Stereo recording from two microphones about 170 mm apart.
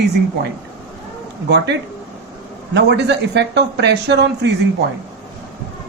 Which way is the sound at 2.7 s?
90° right.